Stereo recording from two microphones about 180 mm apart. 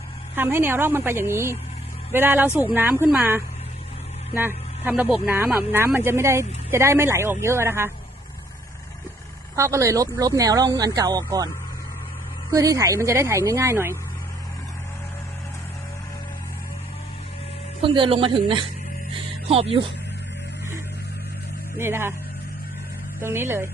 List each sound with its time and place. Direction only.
0.3 s speech: 10° right (ahead or behind)
9.6 s speech: 15° right (ahead or behind)
12.5 s speech: 20° right (ahead or behind)
17.8 s speech: 30° right (ahead or behind)
21.8 s speech: 15° right (ahead or behind)
23.2 s speech: 15° right (ahead or behind)